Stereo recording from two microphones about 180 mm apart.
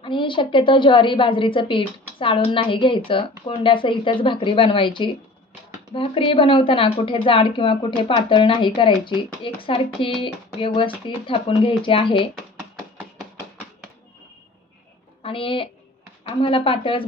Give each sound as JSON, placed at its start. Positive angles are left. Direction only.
{"t": 0.0, "sound": "a woman's voice", "side_deg": 25}
{"t": 15.2, "sound": "a woman's voice", "side_deg": 30}